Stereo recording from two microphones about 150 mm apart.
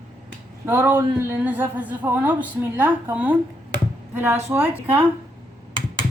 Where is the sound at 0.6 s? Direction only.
15° right (ahead or behind).